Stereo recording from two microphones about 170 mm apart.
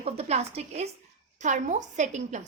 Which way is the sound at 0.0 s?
40° right (ahead or behind).